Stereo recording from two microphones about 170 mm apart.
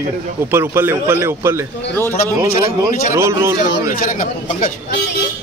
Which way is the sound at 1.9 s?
15° left (ahead or behind).